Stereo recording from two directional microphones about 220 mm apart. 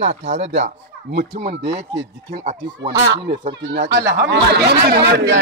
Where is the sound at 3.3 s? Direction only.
55° right (ahead or behind).